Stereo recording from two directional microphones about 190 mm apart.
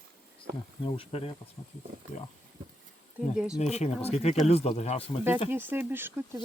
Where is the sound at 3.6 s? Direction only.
35° left (ahead or behind).